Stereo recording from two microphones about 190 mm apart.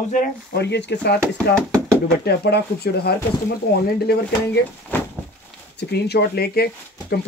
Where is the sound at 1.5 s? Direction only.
5° left (ahead or behind).